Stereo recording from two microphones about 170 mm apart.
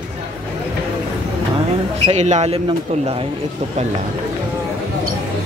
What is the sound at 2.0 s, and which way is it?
Speech, 45° right (ahead or behind).